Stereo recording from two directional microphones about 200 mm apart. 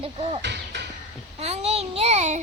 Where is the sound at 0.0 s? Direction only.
30° right (ahead or behind).